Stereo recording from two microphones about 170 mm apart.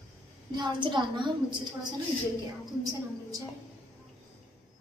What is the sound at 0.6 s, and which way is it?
A woman's voice, 25° right (ahead or behind).